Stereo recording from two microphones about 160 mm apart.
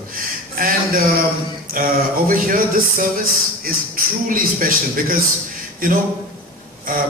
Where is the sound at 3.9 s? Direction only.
60° right (ahead or behind).